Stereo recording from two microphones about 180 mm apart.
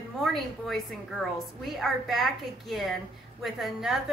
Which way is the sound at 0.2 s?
Centre (ahead or behind).